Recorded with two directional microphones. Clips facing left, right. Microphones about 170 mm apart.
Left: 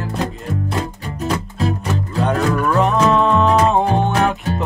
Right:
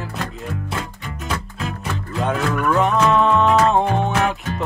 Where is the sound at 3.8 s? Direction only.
35° left (ahead or behind).